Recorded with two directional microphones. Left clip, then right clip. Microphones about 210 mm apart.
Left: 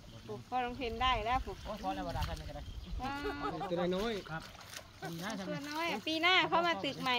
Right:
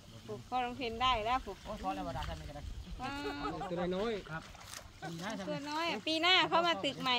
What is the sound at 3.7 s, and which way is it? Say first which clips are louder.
Speech: left 1 dB; 45° left (ahead or behind).